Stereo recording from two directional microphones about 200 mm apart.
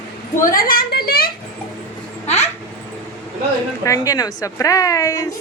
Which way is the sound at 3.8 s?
15° left (ahead or behind).